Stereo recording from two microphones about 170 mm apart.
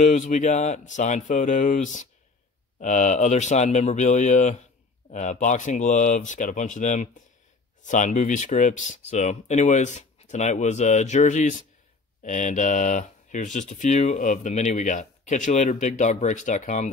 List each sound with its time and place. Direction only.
0.0 s speech: 45° left (ahead or behind)